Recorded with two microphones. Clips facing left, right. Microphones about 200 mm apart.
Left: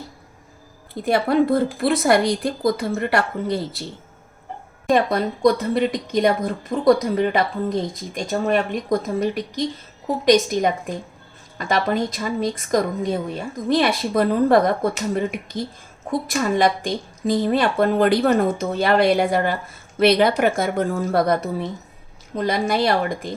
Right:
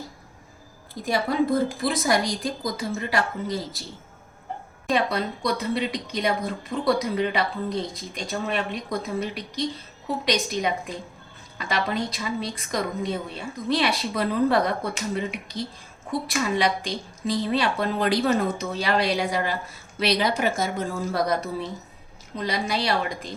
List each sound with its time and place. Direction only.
1.0 s a woman's voice: 60° left (ahead or behind)
4.9 s a woman's voice: 50° left (ahead or behind)